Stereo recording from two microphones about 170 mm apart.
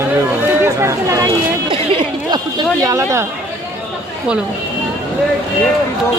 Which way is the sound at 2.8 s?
20° right (ahead or behind).